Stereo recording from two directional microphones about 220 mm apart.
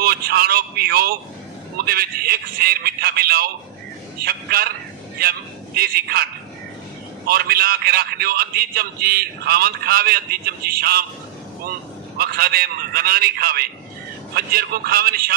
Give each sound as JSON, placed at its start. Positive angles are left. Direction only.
{"t": 0.0, "sound": "a man's voice", "side_deg": -45}
{"t": 5.8, "sound": "a man's voice", "side_deg": -45}
{"t": 7.2, "sound": "a man's voice", "side_deg": -45}
{"t": 12.2, "sound": "a man's voice", "side_deg": -45}